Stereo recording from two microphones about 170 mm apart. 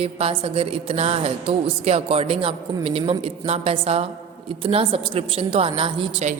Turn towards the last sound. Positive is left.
turn(degrees=-35)  # may be behind; listen again after turning